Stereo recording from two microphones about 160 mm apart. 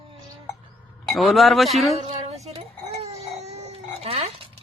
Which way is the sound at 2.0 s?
40° right (ahead or behind).